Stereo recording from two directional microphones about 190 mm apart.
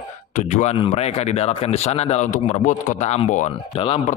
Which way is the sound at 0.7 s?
30° left (ahead or behind).